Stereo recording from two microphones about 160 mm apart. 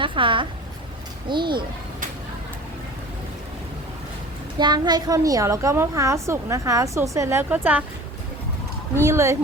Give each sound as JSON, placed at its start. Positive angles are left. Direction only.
{"t": 0.0, "sound": "a sound", "side_deg": -30}
{"t": 1.3, "sound": "a woman's voice", "side_deg": -30}
{"t": 4.5, "sound": "a woman's voice", "side_deg": -25}
{"t": 9.0, "sound": "speech", "side_deg": -20}